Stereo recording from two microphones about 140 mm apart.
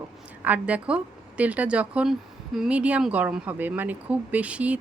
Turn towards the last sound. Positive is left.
turn(degrees=-10)  # may be behind; listen again after turning